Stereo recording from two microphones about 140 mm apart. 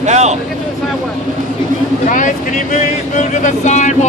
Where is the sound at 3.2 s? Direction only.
65° left (ahead or behind).